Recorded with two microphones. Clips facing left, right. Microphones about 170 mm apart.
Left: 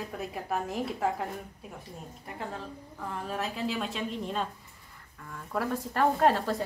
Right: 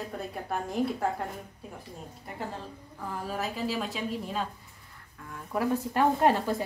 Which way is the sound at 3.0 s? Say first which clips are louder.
Right 1 dB; centre (ahead or behind).